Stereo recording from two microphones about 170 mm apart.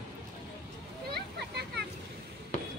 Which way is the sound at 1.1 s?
75° right (ahead or behind).